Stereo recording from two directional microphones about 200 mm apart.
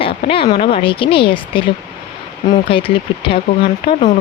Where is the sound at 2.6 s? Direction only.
25° left (ahead or behind).